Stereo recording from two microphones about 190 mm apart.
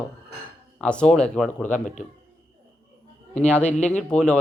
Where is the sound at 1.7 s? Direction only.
40° left (ahead or behind).